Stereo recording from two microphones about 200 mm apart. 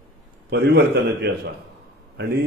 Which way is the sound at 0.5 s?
55° right (ahead or behind).